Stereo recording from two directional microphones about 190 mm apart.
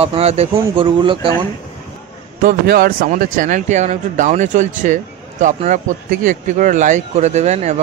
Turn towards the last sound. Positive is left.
turn(degrees=-35)  # may be behind; listen again after turning